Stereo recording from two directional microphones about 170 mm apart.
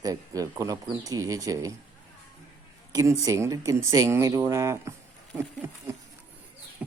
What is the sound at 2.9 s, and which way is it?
Speech, 20° right (ahead or behind).